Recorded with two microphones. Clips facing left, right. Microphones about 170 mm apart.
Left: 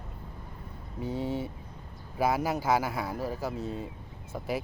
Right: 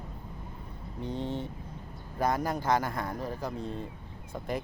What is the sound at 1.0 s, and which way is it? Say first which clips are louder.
Speech: left 2 dB; 10° left (ahead or behind).